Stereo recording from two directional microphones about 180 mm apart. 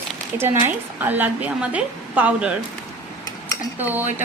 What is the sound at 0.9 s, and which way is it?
A woman's voice, 10° right (ahead or behind).